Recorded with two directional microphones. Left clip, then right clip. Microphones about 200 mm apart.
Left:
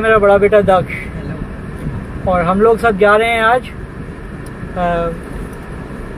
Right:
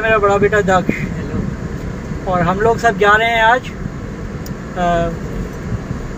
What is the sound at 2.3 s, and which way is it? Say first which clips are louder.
Speech: left 3 dB; 25° left (ahead or behind).